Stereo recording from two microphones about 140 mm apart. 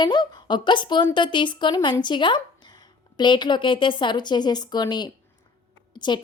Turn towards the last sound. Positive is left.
turn(degrees=30)  # may be behind; listen again after turning